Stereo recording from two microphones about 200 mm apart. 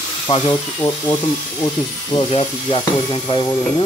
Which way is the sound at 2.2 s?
25° left (ahead or behind).